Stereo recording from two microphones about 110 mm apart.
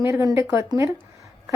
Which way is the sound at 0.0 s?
30° right (ahead or behind).